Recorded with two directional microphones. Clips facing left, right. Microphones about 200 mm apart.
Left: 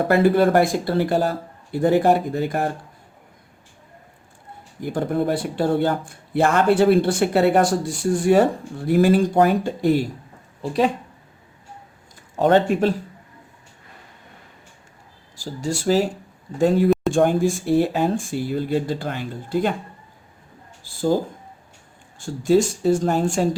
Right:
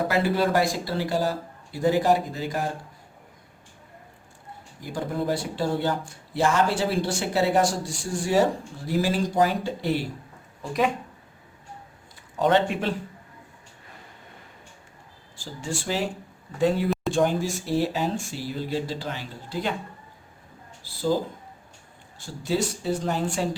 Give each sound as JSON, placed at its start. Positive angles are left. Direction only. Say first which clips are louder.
{"t": 0.1, "sound": "speech", "louder": "left 10 dB", "side_deg": 55}
{"t": 4.8, "sound": "speech", "louder": "left 7 dB", "side_deg": 55}
{"t": 12.4, "sound": "speech", "louder": "left 5 dB", "side_deg": 45}
{"t": 15.4, "sound": "speech", "louder": "left 6 dB", "side_deg": 40}
{"t": 20.8, "sound": "a sound", "louder": "left 4 dB", "side_deg": 50}
{"t": 22.4, "sound": "speech", "louder": "left 9 dB", "side_deg": 45}